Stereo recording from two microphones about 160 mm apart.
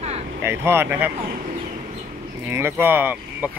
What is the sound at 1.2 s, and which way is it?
Speech, 65° right (ahead or behind).